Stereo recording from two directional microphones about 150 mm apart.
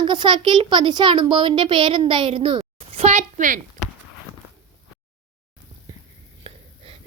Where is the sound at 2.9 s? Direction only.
50° right (ahead or behind).